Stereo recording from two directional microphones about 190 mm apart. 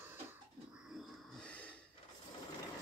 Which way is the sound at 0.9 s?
Centre (ahead or behind).